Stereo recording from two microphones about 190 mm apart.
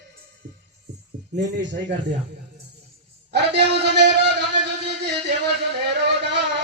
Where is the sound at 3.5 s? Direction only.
65° right (ahead or behind).